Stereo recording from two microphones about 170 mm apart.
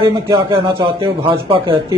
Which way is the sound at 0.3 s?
30° right (ahead or behind).